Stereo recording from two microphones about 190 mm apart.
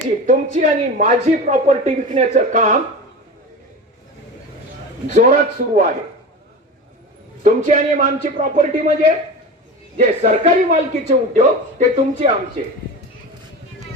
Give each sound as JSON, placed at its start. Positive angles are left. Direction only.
{"t": 0.6, "sound": "a woman's voice", "side_deg": -40}
{"t": 5.1, "sound": "a man's voice", "side_deg": -40}
{"t": 7.4, "sound": "a woman's voice", "side_deg": -40}